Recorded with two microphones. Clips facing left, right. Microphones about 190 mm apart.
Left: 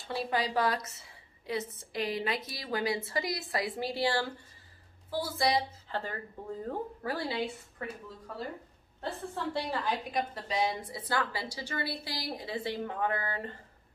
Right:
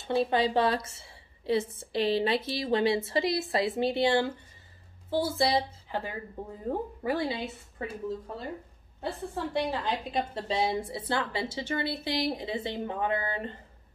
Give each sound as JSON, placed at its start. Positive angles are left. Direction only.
{"t": 0.0, "sound": "a woman's voice", "side_deg": -25}
{"t": 5.9, "sound": "a woman's voice", "side_deg": -15}
{"t": 9.3, "sound": "a woman's voice", "side_deg": -20}